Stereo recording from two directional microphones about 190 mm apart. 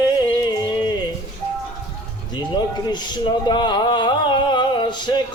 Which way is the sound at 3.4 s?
25° left (ahead or behind).